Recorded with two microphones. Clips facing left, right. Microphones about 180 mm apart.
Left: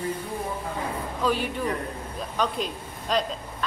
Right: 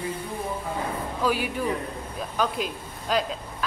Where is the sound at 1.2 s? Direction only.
5° right (ahead or behind).